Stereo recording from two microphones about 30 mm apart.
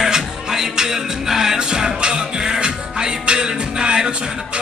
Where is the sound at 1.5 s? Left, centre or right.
Right.